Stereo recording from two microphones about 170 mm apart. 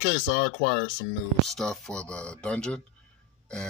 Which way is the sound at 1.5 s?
5° left (ahead or behind).